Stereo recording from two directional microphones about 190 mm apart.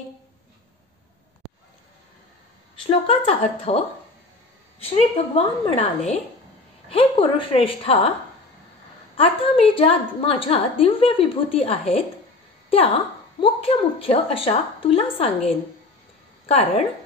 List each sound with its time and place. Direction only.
2.9 s a woman's voice: 30° left (ahead or behind)
9.1 s a woman's voice: 30° left (ahead or behind)
12.6 s a sound: 30° left (ahead or behind)
13.4 s a woman's voice: 30° left (ahead or behind)